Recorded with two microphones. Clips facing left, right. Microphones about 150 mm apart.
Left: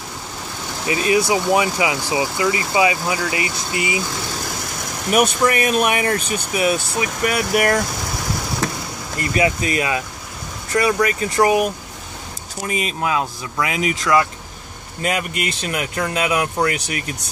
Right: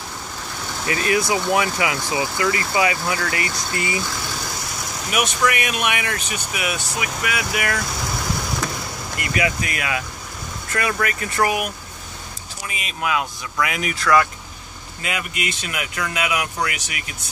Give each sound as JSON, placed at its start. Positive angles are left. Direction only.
{"t": 0.8, "sound": "speech", "side_deg": 20}
{"t": 5.1, "sound": "speech", "side_deg": 35}
{"t": 9.2, "sound": "speech", "side_deg": 30}
{"t": 12.6, "sound": "speech", "side_deg": 40}
{"t": 15.0, "sound": "speech", "side_deg": 40}